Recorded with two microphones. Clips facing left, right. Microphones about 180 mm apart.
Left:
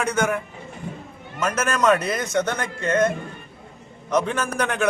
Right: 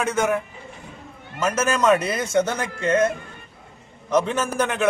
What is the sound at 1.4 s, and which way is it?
Speech, 5° right (ahead or behind).